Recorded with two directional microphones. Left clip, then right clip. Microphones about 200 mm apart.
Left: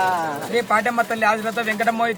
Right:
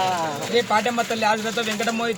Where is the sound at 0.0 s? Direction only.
5° left (ahead or behind).